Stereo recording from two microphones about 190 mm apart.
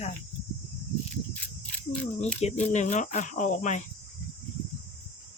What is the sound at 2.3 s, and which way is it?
Speech, 35° left (ahead or behind).